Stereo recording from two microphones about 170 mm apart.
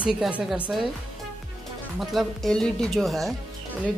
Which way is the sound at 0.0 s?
5° right (ahead or behind).